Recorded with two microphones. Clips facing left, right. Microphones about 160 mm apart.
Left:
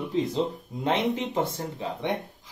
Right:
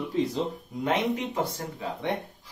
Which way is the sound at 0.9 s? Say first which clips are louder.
Left 1 dB; 30° left (ahead or behind).